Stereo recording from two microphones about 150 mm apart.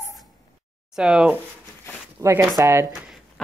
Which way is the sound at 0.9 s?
5° right (ahead or behind).